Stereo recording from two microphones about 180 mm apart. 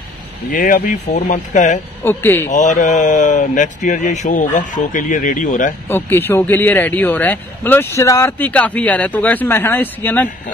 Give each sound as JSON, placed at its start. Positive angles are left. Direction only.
{"t": 0.5, "sound": "speech", "side_deg": 50}
{"t": 2.0, "sound": "speech", "side_deg": 10}
{"t": 2.5, "sound": "speech", "side_deg": 45}
{"t": 5.9, "sound": "speech", "side_deg": 10}